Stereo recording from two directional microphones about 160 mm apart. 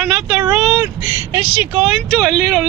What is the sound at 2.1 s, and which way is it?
Speech, 5° left (ahead or behind).